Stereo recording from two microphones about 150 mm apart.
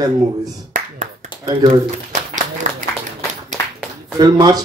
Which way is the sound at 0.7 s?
55° right (ahead or behind).